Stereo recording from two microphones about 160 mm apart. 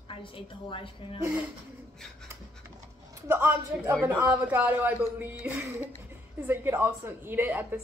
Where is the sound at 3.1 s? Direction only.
15° right (ahead or behind).